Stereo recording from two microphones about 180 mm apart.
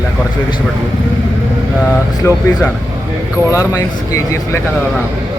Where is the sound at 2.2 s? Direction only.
15° left (ahead or behind).